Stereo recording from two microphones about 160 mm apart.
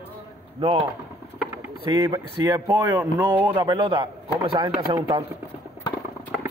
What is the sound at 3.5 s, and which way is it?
A man's voice, 30° right (ahead or behind).